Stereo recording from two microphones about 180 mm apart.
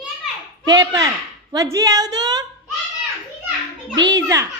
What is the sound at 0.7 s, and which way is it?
A woman's voice, 20° right (ahead or behind).